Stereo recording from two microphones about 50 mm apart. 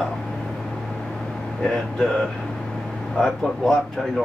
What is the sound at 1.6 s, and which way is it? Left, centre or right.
Speech, centre.